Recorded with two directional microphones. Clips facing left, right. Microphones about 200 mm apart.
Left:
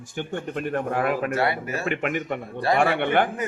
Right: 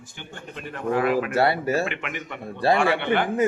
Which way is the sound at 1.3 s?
35° right (ahead or behind).